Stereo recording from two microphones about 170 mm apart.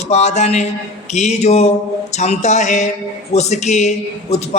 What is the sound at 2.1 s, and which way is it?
Music, 40° left (ahead or behind).